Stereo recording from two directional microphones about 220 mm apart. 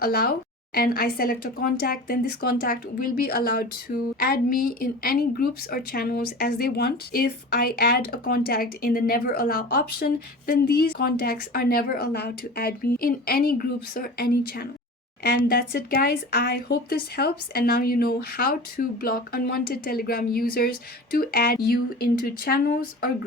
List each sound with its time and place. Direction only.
0.0 s a woman's voice: 45° left (ahead or behind)